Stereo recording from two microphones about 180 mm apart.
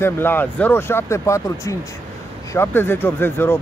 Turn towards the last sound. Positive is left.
turn(degrees=10)  # may be behind; listen again after turning